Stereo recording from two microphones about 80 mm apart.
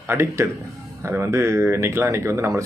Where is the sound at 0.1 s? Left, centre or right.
Right.